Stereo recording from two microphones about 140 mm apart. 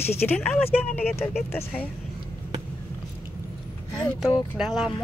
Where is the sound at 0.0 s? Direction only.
15° left (ahead or behind).